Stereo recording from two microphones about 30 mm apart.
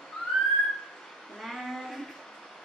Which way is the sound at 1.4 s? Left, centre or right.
Centre.